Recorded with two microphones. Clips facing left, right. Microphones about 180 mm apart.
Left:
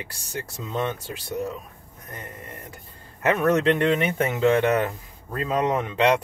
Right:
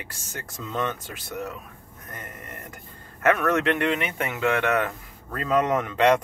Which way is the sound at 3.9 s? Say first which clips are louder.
Left 5 dB; 35° left (ahead or behind).